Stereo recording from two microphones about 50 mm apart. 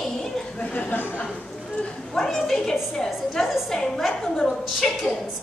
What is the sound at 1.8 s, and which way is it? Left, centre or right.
A woman's voice, centre.